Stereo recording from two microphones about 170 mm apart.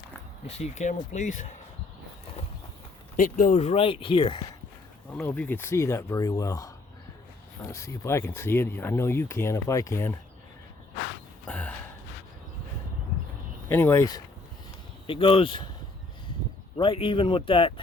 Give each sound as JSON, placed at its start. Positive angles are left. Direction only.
{"t": 0.4, "sound": "speech", "side_deg": 40}
{"t": 3.2, "sound": "speech", "side_deg": 50}
{"t": 5.1, "sound": "speech", "side_deg": 10}
{"t": 11.4, "sound": "a sound", "side_deg": 5}
{"t": 13.7, "sound": "speech", "side_deg": 15}
{"t": 15.0, "sound": "speech", "side_deg": 30}
{"t": 16.7, "sound": "speech", "side_deg": 30}